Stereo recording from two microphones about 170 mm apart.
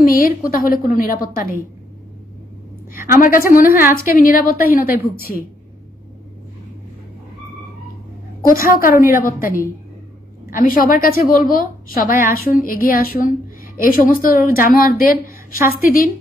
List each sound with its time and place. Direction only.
0.0 s a woman's voice: 55° left (ahead or behind)
2.9 s a woman's voice: 55° left (ahead or behind)
8.5 s a woman's voice: 55° left (ahead or behind)